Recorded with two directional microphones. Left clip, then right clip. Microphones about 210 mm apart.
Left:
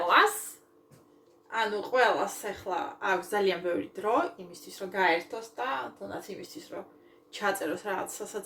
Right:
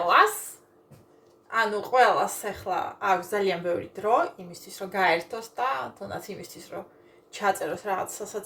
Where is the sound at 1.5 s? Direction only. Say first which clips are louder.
Right 4 dB; 10° left (ahead or behind).